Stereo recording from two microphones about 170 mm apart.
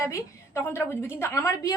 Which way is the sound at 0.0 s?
15° left (ahead or behind).